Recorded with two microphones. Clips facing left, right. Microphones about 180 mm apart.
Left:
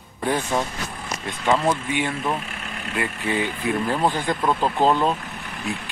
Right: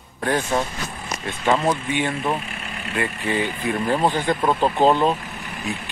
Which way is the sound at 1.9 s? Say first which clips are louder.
Right 1 dB; 5° left (ahead or behind).